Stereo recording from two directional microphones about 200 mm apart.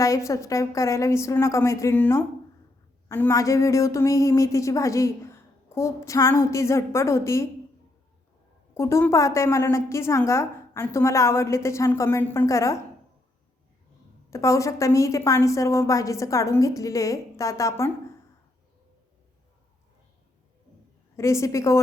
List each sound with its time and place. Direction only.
0.0 s speech: 15° left (ahead or behind)
8.7 s speech: 15° left (ahead or behind)
14.3 s speech: 15° left (ahead or behind)
21.2 s speech: 15° left (ahead or behind)